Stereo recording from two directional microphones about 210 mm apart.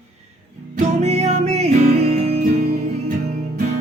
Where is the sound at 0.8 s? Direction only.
30° right (ahead or behind).